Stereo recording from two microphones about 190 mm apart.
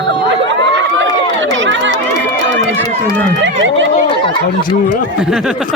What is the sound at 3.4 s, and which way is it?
Speech, 75° right (ahead or behind).